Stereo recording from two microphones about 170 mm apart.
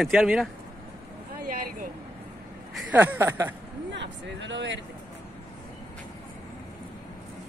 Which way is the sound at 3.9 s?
90° right.